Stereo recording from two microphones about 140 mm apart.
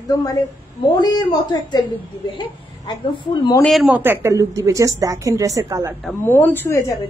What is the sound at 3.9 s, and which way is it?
A woman's voice, 15° right (ahead or behind).